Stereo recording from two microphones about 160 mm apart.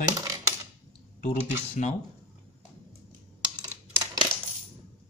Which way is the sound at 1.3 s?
45° left (ahead or behind).